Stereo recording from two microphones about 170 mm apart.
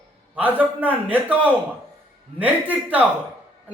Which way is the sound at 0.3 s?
10° right (ahead or behind).